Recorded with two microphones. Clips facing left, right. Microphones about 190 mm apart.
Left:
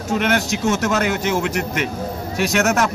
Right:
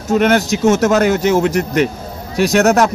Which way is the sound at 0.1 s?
40° right (ahead or behind).